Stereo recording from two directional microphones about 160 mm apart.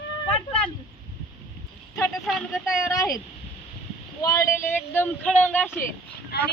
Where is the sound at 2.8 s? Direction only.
20° left (ahead or behind).